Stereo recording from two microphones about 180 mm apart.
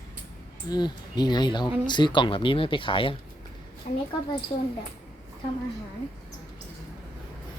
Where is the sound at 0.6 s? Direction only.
20° left (ahead or behind).